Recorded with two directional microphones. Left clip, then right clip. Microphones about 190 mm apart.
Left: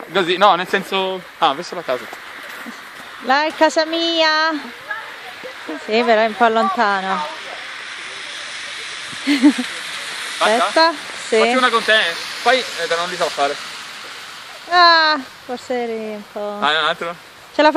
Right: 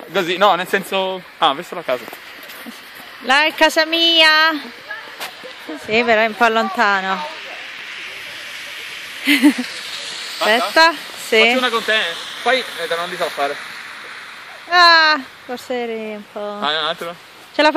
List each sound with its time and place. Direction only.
0.1 s speech: 45° right (ahead or behind)
3.3 s speech: centre (ahead or behind)
5.9 s speech: centre (ahead or behind)
9.2 s a sound: centre (ahead or behind)
9.5 s a sound: 25° right (ahead or behind)
10.7 s speech: 5° right (ahead or behind)
11.6 s speech: 15° right (ahead or behind)
14.7 s speech: centre (ahead or behind)